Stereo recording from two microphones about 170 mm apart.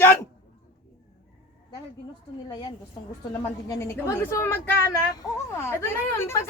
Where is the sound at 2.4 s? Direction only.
25° left (ahead or behind).